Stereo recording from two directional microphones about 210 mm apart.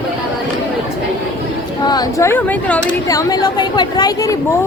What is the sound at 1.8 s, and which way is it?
A man's voice, 20° left (ahead or behind).